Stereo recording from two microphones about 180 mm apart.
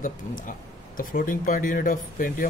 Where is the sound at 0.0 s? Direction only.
50° left (ahead or behind).